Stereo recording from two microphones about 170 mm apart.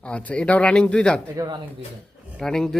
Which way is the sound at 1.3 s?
20° right (ahead or behind).